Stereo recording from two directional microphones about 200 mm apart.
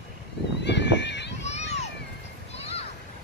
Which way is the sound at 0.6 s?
60° left (ahead or behind).